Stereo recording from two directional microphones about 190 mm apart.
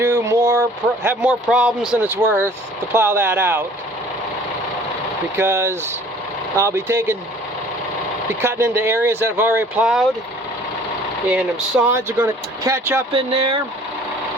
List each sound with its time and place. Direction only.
0.0 s a sound: 15° right (ahead or behind)
1.0 s speech: 10° right (ahead or behind)
5.4 s speech: 15° right (ahead or behind)
8.4 s speech: 15° right (ahead or behind)
11.3 s speech: 5° right (ahead or behind)
13.1 s speech: 30° right (ahead or behind)